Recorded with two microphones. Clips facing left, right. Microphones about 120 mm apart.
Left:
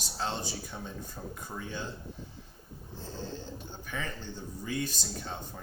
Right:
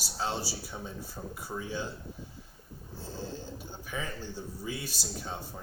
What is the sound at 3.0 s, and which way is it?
Speech, 10° right (ahead or behind).